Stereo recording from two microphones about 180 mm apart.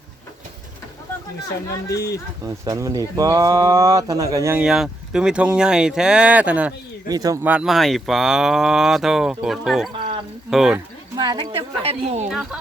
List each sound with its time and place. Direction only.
1.9 s speech: 65° left (ahead or behind)
2.4 s speech: 20° right (ahead or behind)
4.6 s speech: 5° right (ahead or behind)
7.1 s speech: 20° right (ahead or behind)
7.4 s speech: 5° right (ahead or behind)
11.2 s a woman's voice: 25° right (ahead or behind)
12.3 s speech: 5° right (ahead or behind)